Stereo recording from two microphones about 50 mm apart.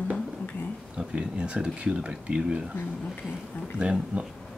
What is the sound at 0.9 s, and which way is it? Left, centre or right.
Speech, centre.